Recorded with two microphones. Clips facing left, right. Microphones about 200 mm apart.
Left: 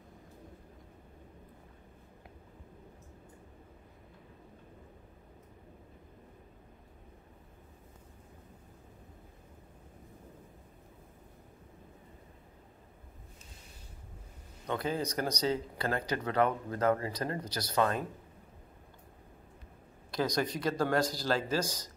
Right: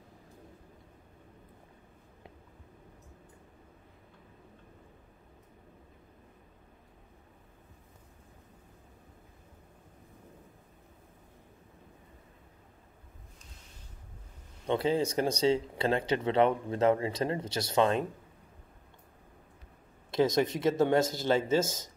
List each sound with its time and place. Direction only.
14.7 s speech: 25° right (ahead or behind)
20.1 s speech: 25° right (ahead or behind)